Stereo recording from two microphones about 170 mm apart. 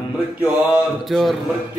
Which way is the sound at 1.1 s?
Centre (ahead or behind).